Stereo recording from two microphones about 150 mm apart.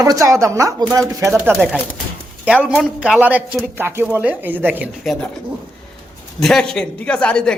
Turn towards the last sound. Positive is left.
turn(degrees=5)  # may be behind; listen again after turning